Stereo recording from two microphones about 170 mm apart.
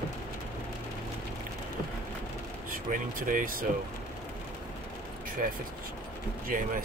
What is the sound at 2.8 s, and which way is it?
Speech, 50° right (ahead or behind).